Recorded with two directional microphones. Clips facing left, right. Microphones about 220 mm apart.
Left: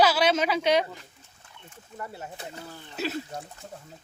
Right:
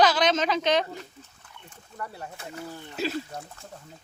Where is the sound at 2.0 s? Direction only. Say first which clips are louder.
Right 1 dB; 20° left (ahead or behind).